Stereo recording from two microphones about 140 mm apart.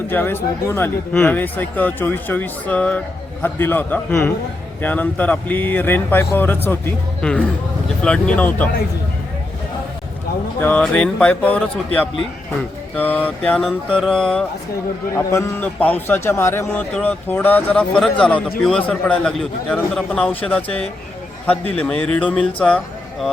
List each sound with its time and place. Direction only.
0.1 s speech: 15° left (ahead or behind)
10.6 s speech: 10° left (ahead or behind)
13.0 s speech: 10° left (ahead or behind)
15.1 s a man's voice: 20° left (ahead or behind)
21.8 s speech: 5° left (ahead or behind)